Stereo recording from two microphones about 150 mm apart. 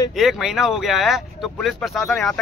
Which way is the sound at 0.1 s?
Centre (ahead or behind).